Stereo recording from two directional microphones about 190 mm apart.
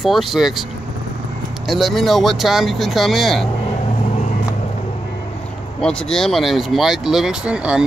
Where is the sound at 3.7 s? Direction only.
35° left (ahead or behind).